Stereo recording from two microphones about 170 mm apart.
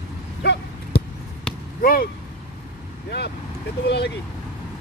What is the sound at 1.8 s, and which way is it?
Speech, 60° left (ahead or behind).